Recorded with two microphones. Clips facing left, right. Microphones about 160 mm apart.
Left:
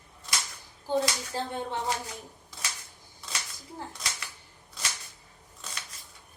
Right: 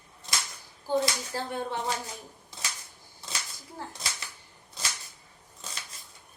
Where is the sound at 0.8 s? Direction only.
20° left (ahead or behind).